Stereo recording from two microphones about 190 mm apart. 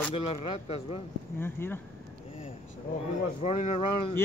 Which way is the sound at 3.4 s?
35° left (ahead or behind).